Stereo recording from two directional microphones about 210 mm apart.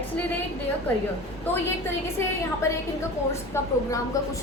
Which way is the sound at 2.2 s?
10° left (ahead or behind).